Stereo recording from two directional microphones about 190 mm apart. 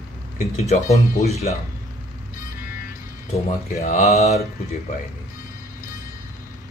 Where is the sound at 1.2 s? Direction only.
35° left (ahead or behind).